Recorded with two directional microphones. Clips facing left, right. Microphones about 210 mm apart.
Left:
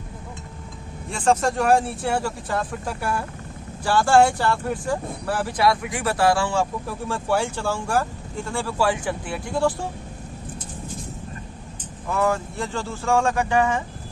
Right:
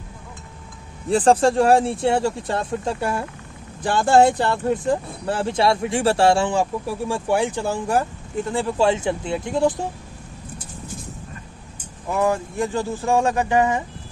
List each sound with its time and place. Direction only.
1.1 s speech: 35° right (ahead or behind)
12.1 s speech: 15° right (ahead or behind)